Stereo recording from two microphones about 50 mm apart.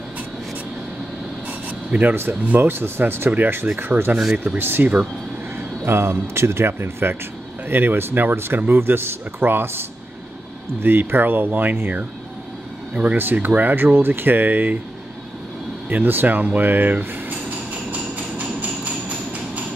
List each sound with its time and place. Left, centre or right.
1.7 s a sound: right
2.4 s speech: right
5.6 s speech: right
12.9 s speech: right
15.9 s speech: right
18.1 s train: right